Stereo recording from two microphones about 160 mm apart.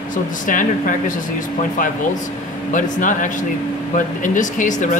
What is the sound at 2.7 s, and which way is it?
Speech, 55° left (ahead or behind).